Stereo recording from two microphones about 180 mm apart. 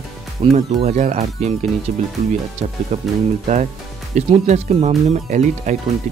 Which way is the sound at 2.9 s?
40° right (ahead or behind).